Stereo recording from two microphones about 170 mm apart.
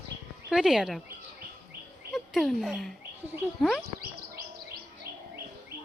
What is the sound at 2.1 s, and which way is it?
Speech, centre (ahead or behind).